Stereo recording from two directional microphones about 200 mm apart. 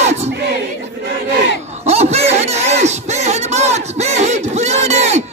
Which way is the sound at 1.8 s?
30° right (ahead or behind).